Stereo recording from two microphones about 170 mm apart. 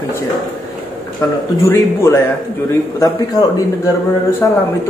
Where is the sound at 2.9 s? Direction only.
20° left (ahead or behind).